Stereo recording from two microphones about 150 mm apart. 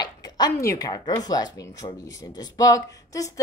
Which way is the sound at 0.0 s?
25° left (ahead or behind).